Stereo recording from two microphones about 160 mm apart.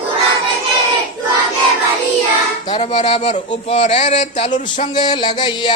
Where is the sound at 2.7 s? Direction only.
40° left (ahead or behind).